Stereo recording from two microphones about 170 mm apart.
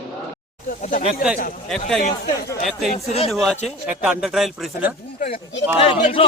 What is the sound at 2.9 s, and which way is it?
Speech, 40° left (ahead or behind).